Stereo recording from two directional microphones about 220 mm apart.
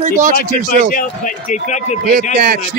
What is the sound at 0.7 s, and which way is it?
A man's voice, 35° left (ahead or behind).